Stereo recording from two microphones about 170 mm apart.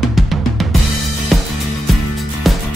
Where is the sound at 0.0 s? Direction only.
Centre (ahead or behind).